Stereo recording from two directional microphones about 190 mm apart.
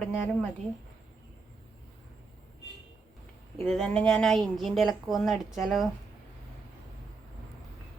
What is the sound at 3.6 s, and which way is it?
Speech, centre (ahead or behind).